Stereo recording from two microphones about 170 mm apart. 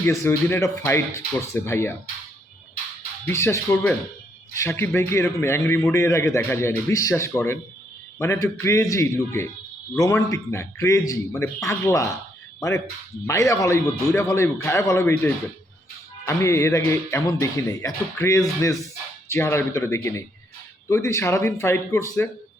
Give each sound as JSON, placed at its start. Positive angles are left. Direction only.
{"t": 0.0, "sound": "a man's voice", "side_deg": 15}
{"t": 3.2, "sound": "a man's voice", "side_deg": 15}